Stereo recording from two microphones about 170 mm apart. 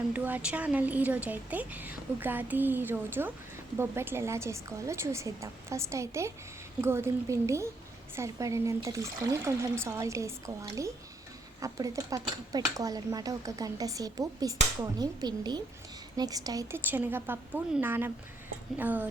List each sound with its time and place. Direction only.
0.1 s speech: 10° right (ahead or behind)